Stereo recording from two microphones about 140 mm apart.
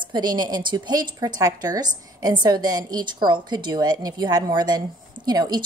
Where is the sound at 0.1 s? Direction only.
30° right (ahead or behind).